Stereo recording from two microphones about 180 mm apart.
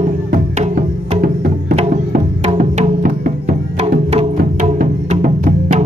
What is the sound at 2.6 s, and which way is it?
Music, 50° right (ahead or behind).